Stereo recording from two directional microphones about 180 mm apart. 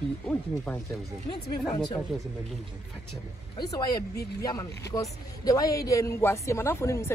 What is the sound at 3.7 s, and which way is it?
A man's voice, 25° left (ahead or behind).